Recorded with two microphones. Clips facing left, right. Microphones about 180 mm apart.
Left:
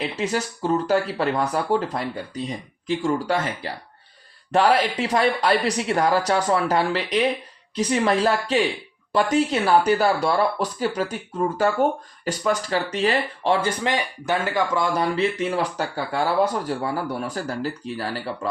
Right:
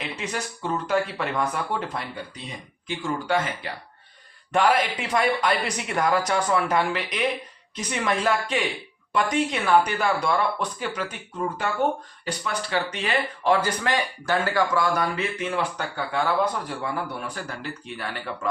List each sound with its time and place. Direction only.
0.2 s speech: 40° left (ahead or behind)